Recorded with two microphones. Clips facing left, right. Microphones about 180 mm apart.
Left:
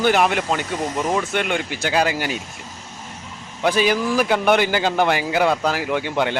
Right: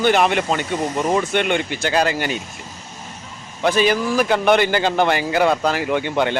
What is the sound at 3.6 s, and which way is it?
A man's voice, 10° left (ahead or behind).